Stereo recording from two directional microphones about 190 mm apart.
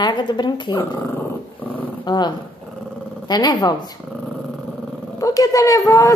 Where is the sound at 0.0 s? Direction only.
25° left (ahead or behind).